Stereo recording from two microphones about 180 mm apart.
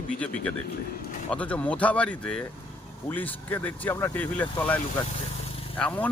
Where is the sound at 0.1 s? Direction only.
5° left (ahead or behind).